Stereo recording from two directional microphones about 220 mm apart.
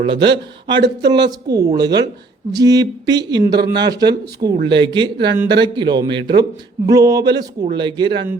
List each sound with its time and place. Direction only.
0.0 s speech: 20° right (ahead or behind)